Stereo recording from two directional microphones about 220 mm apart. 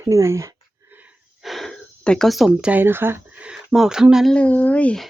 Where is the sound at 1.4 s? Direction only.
Centre (ahead or behind).